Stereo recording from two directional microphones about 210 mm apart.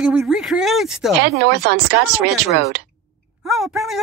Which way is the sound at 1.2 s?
55° right (ahead or behind).